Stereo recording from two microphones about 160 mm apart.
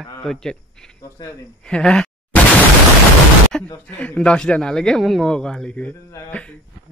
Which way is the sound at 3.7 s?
10° left (ahead or behind).